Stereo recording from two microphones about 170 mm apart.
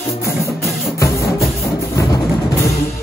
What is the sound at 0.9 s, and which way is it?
Music, 20° left (ahead or behind).